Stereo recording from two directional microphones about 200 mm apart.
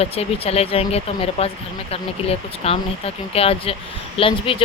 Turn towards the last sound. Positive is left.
turn(degrees=25)  # may be behind; listen again after turning